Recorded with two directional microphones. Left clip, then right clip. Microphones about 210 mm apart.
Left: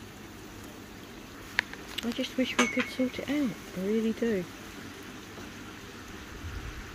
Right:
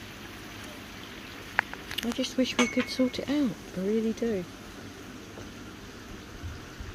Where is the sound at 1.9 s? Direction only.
5° right (ahead or behind).